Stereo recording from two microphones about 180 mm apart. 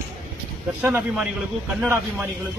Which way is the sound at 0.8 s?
5° right (ahead or behind).